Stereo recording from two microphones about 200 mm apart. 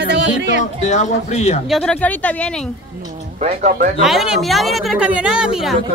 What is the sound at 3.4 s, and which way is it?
Speech, 40° right (ahead or behind).